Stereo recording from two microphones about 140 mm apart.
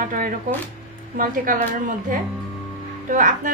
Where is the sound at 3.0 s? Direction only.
70° right (ahead or behind).